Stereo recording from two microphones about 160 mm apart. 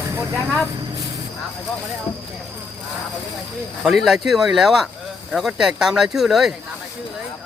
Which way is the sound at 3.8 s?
Centre (ahead or behind).